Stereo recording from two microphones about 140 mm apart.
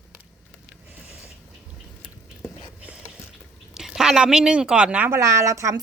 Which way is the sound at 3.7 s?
5° right (ahead or behind).